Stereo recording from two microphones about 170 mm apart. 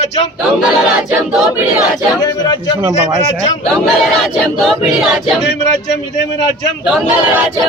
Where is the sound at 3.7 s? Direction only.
Centre (ahead or behind).